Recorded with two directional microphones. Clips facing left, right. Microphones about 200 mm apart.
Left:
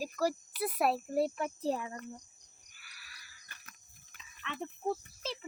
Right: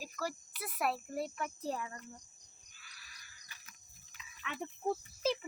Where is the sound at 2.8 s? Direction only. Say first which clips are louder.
Left 2 dB; 10° left (ahead or behind).